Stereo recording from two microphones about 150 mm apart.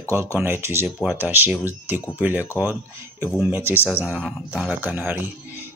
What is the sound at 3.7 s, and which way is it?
Speech, 15° right (ahead or behind).